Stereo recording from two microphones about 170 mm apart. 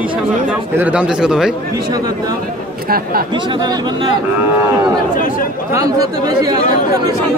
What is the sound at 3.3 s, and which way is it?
Speech, 25° right (ahead or behind).